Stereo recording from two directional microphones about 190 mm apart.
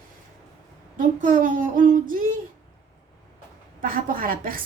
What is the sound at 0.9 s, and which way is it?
A woman's voice, 45° right (ahead or behind).